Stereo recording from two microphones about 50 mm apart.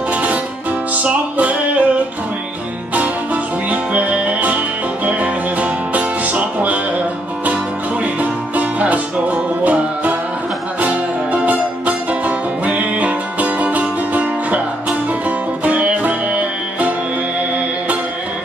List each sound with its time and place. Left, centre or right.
0.1 s music: right
3.7 s music: right
8.0 s music: right